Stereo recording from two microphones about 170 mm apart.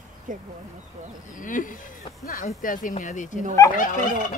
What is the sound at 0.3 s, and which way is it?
Speech, 50° right (ahead or behind).